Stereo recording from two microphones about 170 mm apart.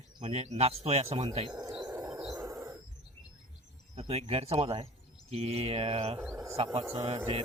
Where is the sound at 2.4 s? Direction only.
20° right (ahead or behind).